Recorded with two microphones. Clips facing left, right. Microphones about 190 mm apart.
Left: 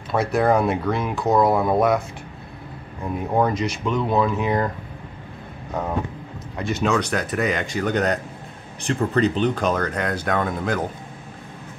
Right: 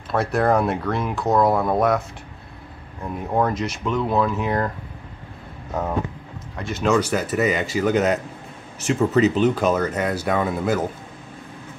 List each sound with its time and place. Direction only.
0.1 s speech: centre (ahead or behind)
5.7 s speech: 5° right (ahead or behind)